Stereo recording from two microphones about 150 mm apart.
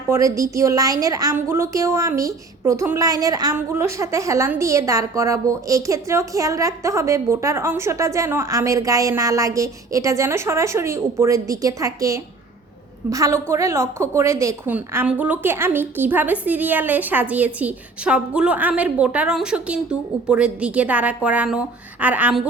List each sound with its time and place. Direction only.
0.1 s a woman's voice: 20° right (ahead or behind)